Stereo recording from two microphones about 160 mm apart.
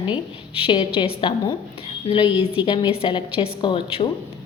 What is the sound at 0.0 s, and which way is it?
A woman's voice, 35° left (ahead or behind).